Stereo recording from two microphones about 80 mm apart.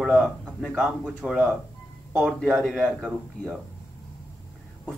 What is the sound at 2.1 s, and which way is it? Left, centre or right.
Speech, centre.